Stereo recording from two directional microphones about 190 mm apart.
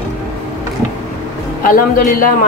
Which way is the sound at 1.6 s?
45° left (ahead or behind).